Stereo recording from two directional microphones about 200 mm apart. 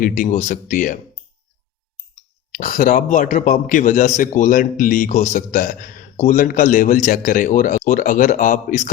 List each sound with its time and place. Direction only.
0.0 s a man's voice: 40° left (ahead or behind)
2.5 s a man's voice: 40° left (ahead or behind)